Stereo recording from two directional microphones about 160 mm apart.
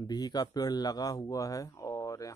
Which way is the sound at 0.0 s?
25° left (ahead or behind).